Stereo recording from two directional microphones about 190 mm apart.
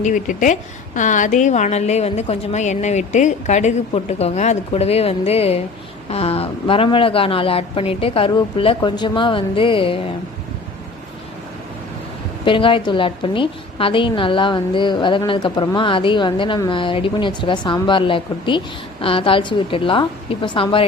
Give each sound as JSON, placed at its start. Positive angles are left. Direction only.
{"t": 0.0, "sound": "a woman's voice", "side_deg": 40}
{"t": 12.5, "sound": "a woman's voice", "side_deg": 25}